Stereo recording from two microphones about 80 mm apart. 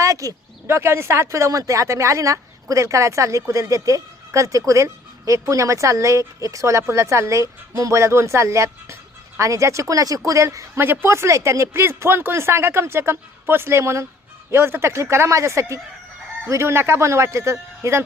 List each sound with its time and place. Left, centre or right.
0.0 s speech: right
10.8 s speech: right